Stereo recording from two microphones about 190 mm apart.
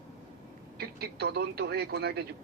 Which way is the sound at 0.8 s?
55° right (ahead or behind).